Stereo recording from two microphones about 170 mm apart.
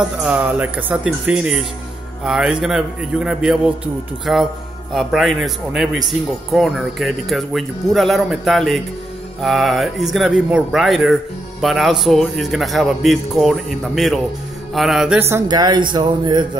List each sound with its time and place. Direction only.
0.2 s a man's voice: 5° right (ahead or behind)
15.1 s speech: 15° right (ahead or behind)
15.4 s speech: 25° right (ahead or behind)